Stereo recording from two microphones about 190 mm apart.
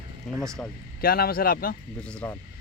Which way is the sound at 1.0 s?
50° left (ahead or behind).